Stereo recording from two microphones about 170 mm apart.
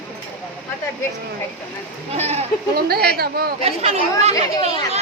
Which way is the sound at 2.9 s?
65° right (ahead or behind).